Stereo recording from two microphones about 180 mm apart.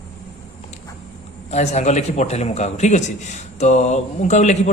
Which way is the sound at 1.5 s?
40° left (ahead or behind).